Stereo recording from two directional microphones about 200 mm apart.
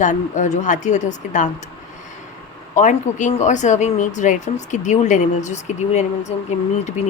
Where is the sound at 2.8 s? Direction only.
35° left (ahead or behind).